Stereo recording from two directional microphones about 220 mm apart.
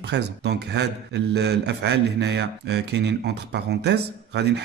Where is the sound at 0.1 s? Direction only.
50° right (ahead or behind).